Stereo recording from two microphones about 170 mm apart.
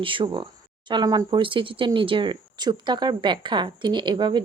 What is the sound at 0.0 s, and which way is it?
Speech, 30° right (ahead or behind).